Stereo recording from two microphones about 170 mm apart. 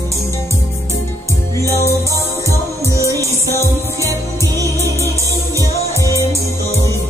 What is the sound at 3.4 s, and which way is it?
Music, 15° left (ahead or behind).